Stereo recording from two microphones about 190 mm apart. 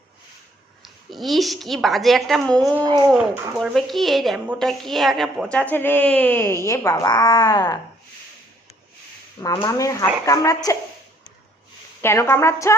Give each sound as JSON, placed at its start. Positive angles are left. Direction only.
{"t": 0.8, "sound": "a woman's voice", "side_deg": 0}
{"t": 2.8, "sound": "speech", "side_deg": -20}
{"t": 3.1, "sound": "a woman's voice", "side_deg": 0}
{"t": 9.6, "sound": "a woman's voice", "side_deg": 20}
{"t": 12.0, "sound": "a woman's voice", "side_deg": 15}